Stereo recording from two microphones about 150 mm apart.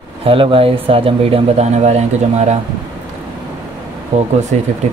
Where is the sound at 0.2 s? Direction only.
35° right (ahead or behind).